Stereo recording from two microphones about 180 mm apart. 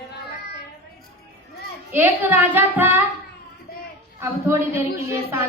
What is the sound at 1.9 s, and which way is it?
Speech, 10° right (ahead or behind).